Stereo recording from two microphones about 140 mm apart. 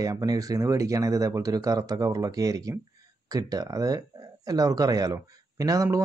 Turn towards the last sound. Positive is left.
turn(degrees=-25)  # may be behind; listen again after turning